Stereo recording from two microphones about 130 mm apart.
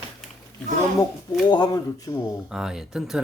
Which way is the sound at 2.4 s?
5° right (ahead or behind).